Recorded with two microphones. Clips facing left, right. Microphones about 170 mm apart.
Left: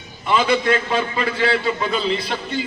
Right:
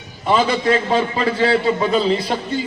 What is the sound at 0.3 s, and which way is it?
A man's voice, 35° right (ahead or behind).